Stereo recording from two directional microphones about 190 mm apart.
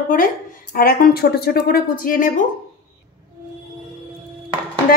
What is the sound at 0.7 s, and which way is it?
Speech, 50° left (ahead or behind).